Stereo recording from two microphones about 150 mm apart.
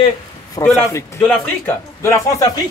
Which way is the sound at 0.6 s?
30° left (ahead or behind).